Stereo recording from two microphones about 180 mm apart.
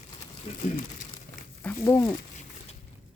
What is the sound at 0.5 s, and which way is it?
Speech, 35° left (ahead or behind).